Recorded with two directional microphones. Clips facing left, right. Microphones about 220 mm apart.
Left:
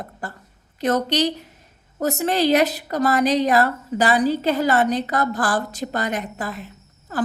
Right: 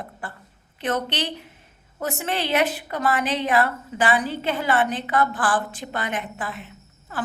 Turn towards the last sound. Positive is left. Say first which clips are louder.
# left 5 dB
turn(degrees=40)  # may be behind; listen again after turning